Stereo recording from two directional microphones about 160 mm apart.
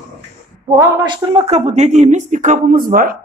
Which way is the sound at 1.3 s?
40° right (ahead or behind).